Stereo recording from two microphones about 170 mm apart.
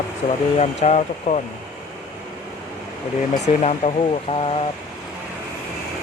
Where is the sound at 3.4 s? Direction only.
40° left (ahead or behind).